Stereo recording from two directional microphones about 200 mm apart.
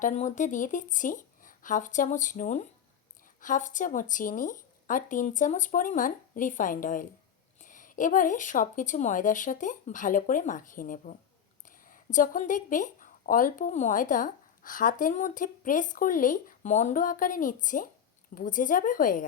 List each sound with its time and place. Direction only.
0.0 s a woman's voice: 40° left (ahead or behind)